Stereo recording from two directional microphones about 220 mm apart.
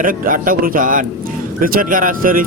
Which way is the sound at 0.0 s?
40° right (ahead or behind).